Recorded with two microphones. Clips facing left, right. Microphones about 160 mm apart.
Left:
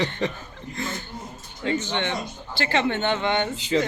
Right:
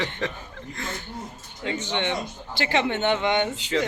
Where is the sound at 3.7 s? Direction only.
15° left (ahead or behind).